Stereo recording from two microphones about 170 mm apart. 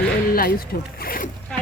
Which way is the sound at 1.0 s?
55° left (ahead or behind).